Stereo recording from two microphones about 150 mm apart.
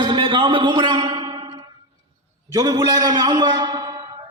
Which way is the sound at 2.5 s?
25° right (ahead or behind).